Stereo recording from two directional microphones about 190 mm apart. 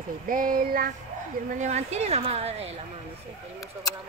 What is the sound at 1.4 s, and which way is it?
A woman's voice, 40° right (ahead or behind).